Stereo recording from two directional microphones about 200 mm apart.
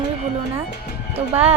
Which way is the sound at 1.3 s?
30° right (ahead or behind).